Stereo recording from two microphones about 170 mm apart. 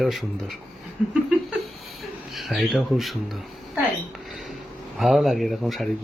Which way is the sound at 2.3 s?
Centre (ahead or behind).